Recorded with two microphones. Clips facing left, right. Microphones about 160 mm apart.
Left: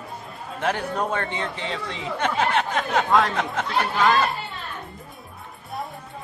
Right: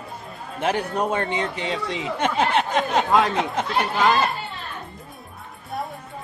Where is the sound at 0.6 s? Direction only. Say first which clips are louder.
Right 2 dB; 20° right (ahead or behind).